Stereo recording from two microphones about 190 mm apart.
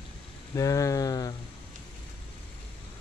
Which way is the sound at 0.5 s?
15° left (ahead or behind).